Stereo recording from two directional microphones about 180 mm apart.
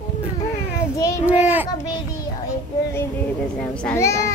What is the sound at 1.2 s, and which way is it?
Speech, 10° right (ahead or behind).